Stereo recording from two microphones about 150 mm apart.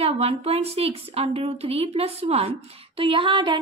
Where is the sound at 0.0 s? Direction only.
40° right (ahead or behind).